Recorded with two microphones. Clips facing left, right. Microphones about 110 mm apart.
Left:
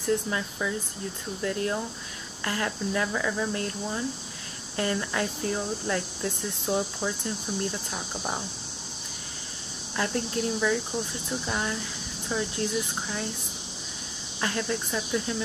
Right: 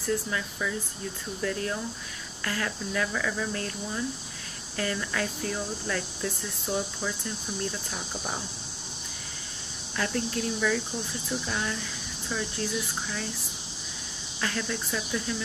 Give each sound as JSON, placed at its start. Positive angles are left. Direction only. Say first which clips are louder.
{"t": 0.0, "sound": "speech", "louder": "left 2 dB", "side_deg": 25}
{"t": 3.5, "sound": "speech", "louder": "left 2 dB", "side_deg": 30}
{"t": 9.9, "sound": "speech", "louder": "left 1 dB", "side_deg": 30}
{"t": 11.4, "sound": "speech", "louder": "left 2 dB", "side_deg": 25}
{"t": 14.4, "sound": "speech", "louder": "left 2 dB", "side_deg": 30}